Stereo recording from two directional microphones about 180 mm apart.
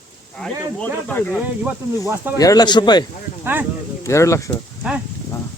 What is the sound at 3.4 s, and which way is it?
Speech, 10° right (ahead or behind).